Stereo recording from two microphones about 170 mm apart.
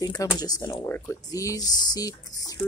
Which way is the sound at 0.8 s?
10° left (ahead or behind).